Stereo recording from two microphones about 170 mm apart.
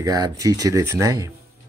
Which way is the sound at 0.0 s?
20° right (ahead or behind).